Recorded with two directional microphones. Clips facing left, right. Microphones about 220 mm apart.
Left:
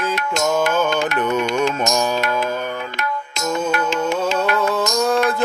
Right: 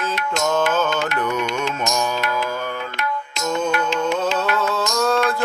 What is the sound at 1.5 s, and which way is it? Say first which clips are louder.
Mantra: left 4 dB; 45° left (ahead or behind).